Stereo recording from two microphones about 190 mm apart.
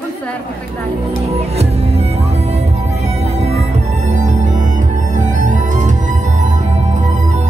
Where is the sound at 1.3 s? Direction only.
35° right (ahead or behind).